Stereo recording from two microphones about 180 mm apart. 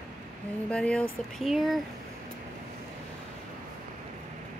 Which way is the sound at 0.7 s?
5° left (ahead or behind).